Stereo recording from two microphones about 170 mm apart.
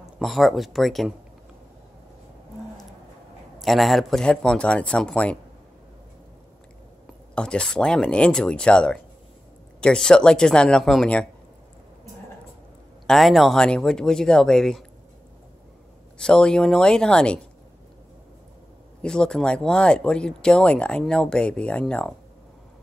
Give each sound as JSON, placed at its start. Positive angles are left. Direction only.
{"t": 0.2, "sound": "speech", "side_deg": 0}
{"t": 3.5, "sound": "speech", "side_deg": 0}
{"t": 7.3, "sound": "speech", "side_deg": 5}
{"t": 13.0, "sound": "speech", "side_deg": 0}
{"t": 16.2, "sound": "speech", "side_deg": 5}
{"t": 18.9, "sound": "speech", "side_deg": 5}